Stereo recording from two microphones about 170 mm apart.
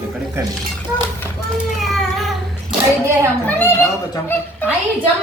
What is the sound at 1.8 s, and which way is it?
Cat, centre (ahead or behind).